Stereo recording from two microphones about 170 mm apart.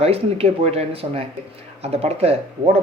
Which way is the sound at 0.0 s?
35° right (ahead or behind).